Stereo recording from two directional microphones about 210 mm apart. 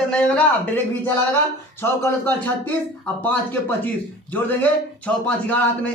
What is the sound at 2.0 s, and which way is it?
Speech, 10° left (ahead or behind).